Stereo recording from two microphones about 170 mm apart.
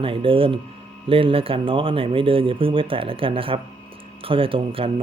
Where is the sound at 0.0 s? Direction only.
30° right (ahead or behind).